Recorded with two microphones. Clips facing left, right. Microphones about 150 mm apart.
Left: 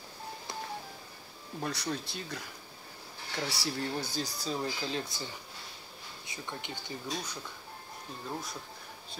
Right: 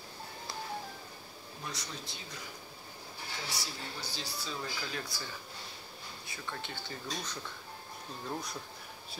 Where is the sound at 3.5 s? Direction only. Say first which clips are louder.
Left 8 dB; 70° left (ahead or behind).